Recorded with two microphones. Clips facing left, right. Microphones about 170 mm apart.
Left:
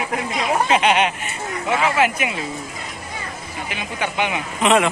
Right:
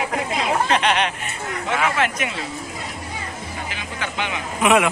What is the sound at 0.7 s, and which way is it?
Speech, 5° left (ahead or behind).